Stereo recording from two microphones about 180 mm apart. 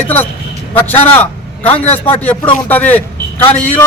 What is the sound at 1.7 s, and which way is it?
Speech, 35° left (ahead or behind).